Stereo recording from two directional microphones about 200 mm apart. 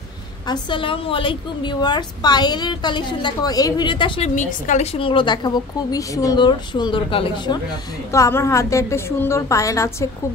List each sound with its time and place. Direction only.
0.5 s a woman's voice: 25° left (ahead or behind)
4.4 s a woman's voice: 35° left (ahead or behind)
8.1 s a woman's voice: 15° left (ahead or behind)